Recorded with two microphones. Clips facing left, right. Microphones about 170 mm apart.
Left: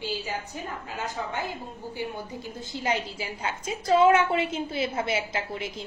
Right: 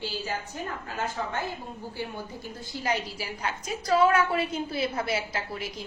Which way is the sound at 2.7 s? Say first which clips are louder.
Left 1 dB; 25° left (ahead or behind).